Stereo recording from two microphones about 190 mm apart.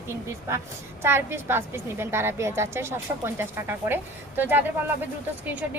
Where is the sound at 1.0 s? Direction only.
10° right (ahead or behind).